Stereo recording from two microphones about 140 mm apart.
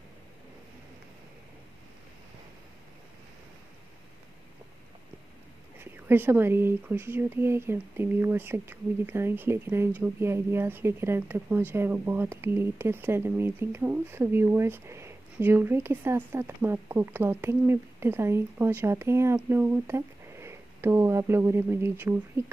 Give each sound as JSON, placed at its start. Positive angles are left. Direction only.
{"t": 5.8, "sound": "speech", "side_deg": -15}